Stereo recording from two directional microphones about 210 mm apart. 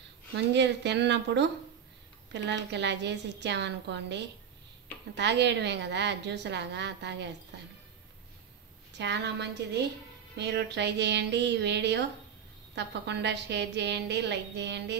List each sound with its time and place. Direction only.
0.5 s a woman's voice: 55° right (ahead or behind)
8.9 s a woman's voice: 55° right (ahead or behind)